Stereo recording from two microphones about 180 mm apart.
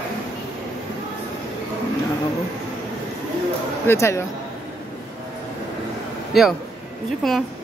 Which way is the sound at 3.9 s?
15° left (ahead or behind).